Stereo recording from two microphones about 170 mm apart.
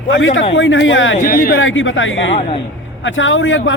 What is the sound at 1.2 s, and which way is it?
Speech, 55° left (ahead or behind).